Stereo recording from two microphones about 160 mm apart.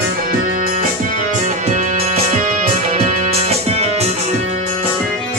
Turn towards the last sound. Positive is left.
turn(degrees=-45)  # may be behind; listen again after turning